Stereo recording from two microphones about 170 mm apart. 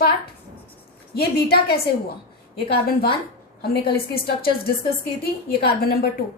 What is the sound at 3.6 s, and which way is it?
A woman's voice, 70° left (ahead or behind).